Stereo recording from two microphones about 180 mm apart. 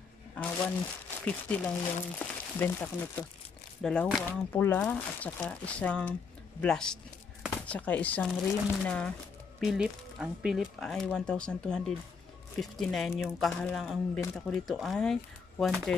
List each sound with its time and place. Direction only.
0.3 s speech: 5° left (ahead or behind)